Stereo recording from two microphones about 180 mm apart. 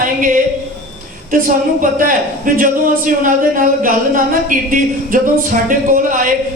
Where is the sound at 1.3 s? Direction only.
50° right (ahead or behind).